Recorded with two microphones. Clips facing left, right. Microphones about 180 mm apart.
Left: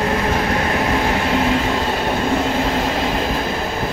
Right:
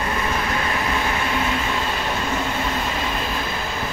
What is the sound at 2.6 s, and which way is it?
Train, 65° left (ahead or behind).